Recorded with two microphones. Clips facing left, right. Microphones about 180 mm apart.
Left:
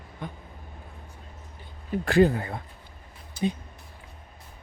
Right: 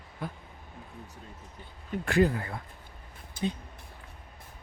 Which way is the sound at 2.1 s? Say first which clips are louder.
Left 5 dB; 30° left (ahead or behind).